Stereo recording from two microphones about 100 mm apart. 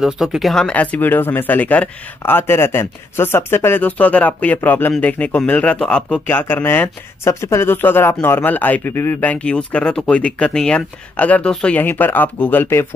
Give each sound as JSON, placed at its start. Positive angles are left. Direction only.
{"t": 0.0, "sound": "speech", "side_deg": -5}
{"t": 6.2, "sound": "speech", "side_deg": 20}